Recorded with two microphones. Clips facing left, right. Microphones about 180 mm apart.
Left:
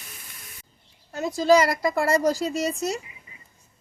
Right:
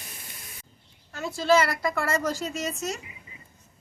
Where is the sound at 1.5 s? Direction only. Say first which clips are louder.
Left 3 dB; 35° left (ahead or behind).